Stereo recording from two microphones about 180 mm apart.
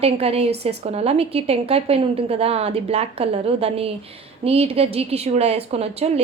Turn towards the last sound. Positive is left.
turn(degrees=-35)  # may be behind; listen again after turning